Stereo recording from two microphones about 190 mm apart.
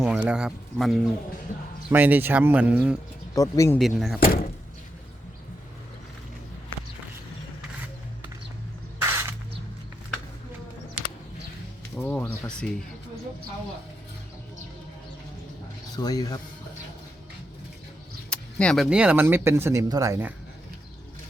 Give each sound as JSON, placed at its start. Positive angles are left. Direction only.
{"t": 0.0, "sound": "speech", "side_deg": -5}
{"t": 3.3, "sound": "speech", "side_deg": 15}
{"t": 3.8, "sound": "speech", "side_deg": 0}
{"t": 4.2, "sound": "speech", "side_deg": 50}
{"t": 9.0, "sound": "spray", "side_deg": -15}
{"t": 11.9, "sound": "a sound", "side_deg": 5}
{"t": 16.0, "sound": "speech", "side_deg": 20}
{"t": 18.3, "sound": "speech", "side_deg": 5}